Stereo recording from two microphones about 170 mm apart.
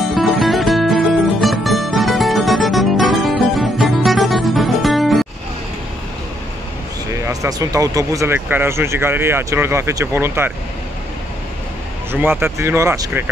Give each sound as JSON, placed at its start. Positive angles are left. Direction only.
{"t": 0.0, "sound": "music", "side_deg": 0}
{"t": 7.2, "sound": "speech", "side_deg": -20}
{"t": 12.1, "sound": "speech", "side_deg": -15}